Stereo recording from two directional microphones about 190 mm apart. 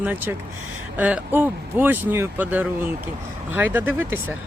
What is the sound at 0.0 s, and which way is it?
Speech, 10° right (ahead or behind).